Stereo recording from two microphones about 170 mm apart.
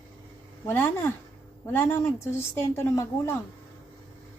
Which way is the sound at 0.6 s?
15° left (ahead or behind).